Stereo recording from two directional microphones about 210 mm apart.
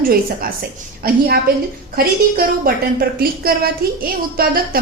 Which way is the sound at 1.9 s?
45° right (ahead or behind).